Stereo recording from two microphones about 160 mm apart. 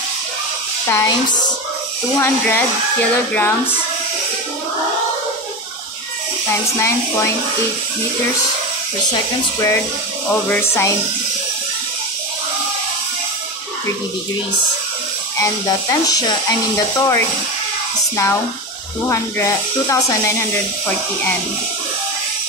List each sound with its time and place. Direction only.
0.8 s speech: 15° left (ahead or behind)
2.1 s speech: 15° left (ahead or behind)
10.5 s speech: 15° left (ahead or behind)
15.4 s speech: 20° left (ahead or behind)